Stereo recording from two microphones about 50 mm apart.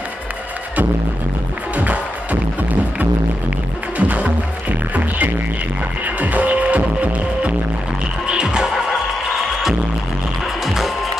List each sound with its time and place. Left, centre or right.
4.0 s music: right
8.3 s music: centre
10.4 s music: centre